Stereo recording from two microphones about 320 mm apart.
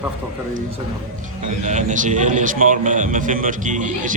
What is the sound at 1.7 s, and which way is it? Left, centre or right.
A man's voice, right.